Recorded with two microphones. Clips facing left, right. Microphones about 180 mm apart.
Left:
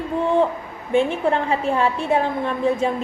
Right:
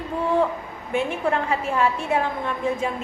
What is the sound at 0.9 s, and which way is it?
A woman's voice, 30° left (ahead or behind).